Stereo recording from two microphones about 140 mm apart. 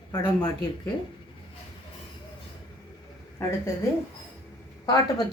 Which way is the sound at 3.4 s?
20° left (ahead or behind).